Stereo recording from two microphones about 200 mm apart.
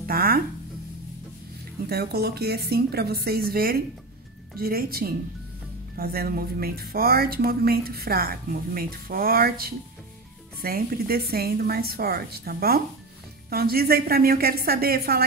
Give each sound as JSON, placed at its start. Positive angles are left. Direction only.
{"t": 0.0, "sound": "speech", "side_deg": -50}
{"t": 1.9, "sound": "speech", "side_deg": -50}